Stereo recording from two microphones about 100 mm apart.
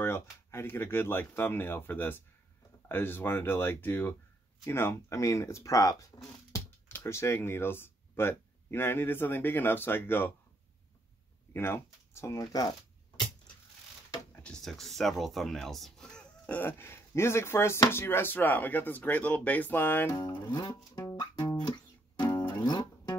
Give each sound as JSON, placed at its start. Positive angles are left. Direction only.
{"t": 0.0, "sound": "speech", "side_deg": 25}
{"t": 6.9, "sound": "speech", "side_deg": 25}
{"t": 11.5, "sound": "speech", "side_deg": 25}
{"t": 14.3, "sound": "speech", "side_deg": 10}
{"t": 20.1, "sound": "speech", "side_deg": 40}
{"t": 20.5, "sound": "music", "side_deg": 40}
{"t": 21.2, "sound": "music", "side_deg": 45}